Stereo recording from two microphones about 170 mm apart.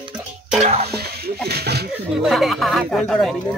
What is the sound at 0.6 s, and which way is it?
Speech, 40° right (ahead or behind).